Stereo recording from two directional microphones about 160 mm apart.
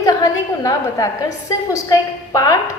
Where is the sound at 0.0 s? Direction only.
20° left (ahead or behind).